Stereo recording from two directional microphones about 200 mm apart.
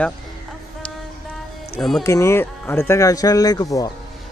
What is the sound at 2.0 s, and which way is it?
Speech, 15° left (ahead or behind).